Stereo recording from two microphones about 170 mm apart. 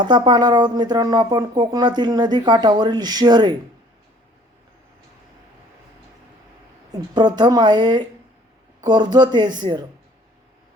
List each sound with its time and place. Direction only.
0.0 s speech: 25° right (ahead or behind)
7.1 s speech: 25° right (ahead or behind)